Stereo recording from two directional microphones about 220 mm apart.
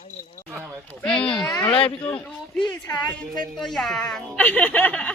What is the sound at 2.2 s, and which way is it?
Speech, 5° left (ahead or behind).